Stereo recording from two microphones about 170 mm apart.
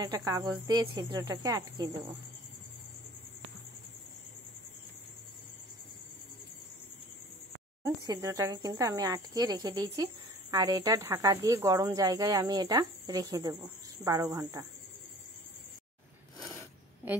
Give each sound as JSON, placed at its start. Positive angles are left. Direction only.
{"t": 0.0, "sound": "speech", "side_deg": -20}
{"t": 7.8, "sound": "speech", "side_deg": -20}